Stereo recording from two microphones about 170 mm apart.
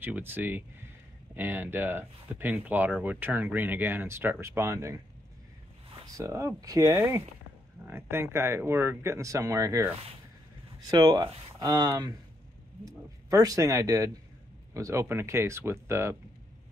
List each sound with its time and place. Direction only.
0.0 s speech: 10° right (ahead or behind)
6.1 s speech: 15° right (ahead or behind)
13.3 s speech: 20° right (ahead or behind)